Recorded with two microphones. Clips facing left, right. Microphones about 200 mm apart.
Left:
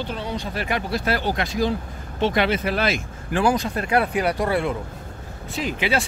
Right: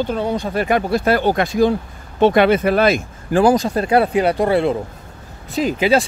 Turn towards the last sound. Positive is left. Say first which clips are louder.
# right 8 dB
turn(degrees=-40)  # may be behind; listen again after turning